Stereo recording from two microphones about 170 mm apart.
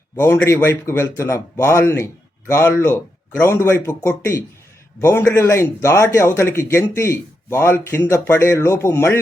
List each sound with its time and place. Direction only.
0.2 s speech: 15° left (ahead or behind)